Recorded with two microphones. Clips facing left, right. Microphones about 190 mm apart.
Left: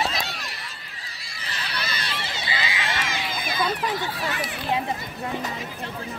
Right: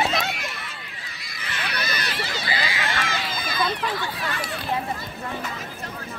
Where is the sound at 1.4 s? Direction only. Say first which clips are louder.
Right 2 dB; 35° left (ahead or behind).